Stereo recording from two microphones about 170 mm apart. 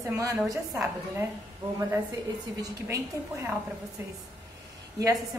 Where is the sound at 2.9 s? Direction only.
15° right (ahead or behind).